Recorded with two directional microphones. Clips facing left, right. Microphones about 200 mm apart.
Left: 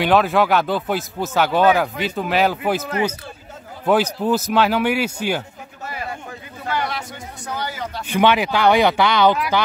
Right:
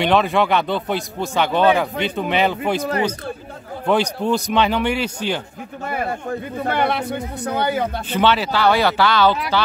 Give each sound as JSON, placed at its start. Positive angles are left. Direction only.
{"t": 0.0, "sound": "speech", "side_deg": 5}
{"t": 3.8, "sound": "speech", "side_deg": 5}
{"t": 5.9, "sound": "speech", "side_deg": -50}
{"t": 8.1, "sound": "speech", "side_deg": 15}